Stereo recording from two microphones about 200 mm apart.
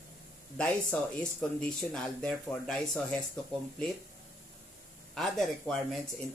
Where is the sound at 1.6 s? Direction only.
5° left (ahead or behind).